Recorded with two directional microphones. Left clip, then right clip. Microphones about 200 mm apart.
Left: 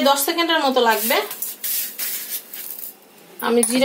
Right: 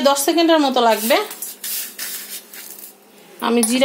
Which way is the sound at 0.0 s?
50° right (ahead or behind).